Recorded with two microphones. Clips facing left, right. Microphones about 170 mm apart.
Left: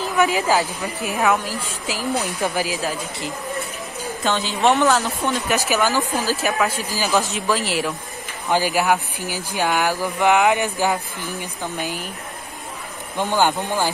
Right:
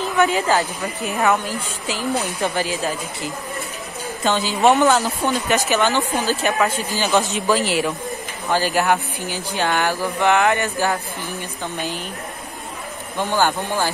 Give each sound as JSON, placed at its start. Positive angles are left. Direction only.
{"t": 0.2, "sound": "a woman's voice", "side_deg": 0}
{"t": 4.2, "sound": "a woman's voice", "side_deg": 0}
{"t": 8.5, "sound": "speech", "side_deg": 10}
{"t": 13.2, "sound": "speech", "side_deg": 15}